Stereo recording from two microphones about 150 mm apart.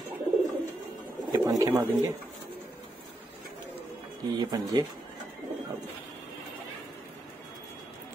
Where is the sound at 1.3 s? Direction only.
25° right (ahead or behind).